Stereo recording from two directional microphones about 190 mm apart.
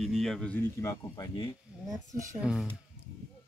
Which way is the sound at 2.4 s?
5° right (ahead or behind).